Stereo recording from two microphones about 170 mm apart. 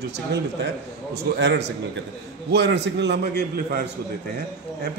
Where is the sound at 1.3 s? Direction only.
90° right; by 3.8 s 70° right (ahead or behind).